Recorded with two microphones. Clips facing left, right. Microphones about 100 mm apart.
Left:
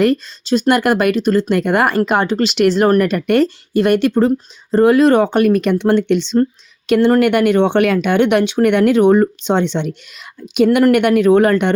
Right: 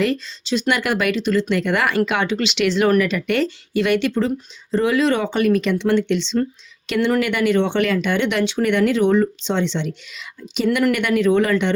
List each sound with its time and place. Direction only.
0.0 s speech: 50° left (ahead or behind)